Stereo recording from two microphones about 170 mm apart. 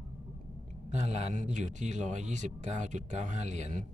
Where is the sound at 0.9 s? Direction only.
40° right (ahead or behind).